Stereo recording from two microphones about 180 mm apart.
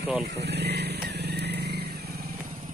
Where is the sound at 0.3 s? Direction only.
65° right (ahead or behind).